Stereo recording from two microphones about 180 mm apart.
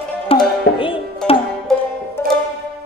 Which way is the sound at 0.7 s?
30° left (ahead or behind).